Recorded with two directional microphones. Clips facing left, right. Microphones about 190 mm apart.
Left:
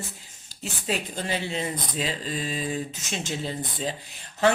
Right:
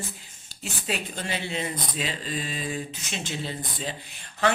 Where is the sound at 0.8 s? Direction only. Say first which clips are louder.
Left 2 dB; 35° left (ahead or behind).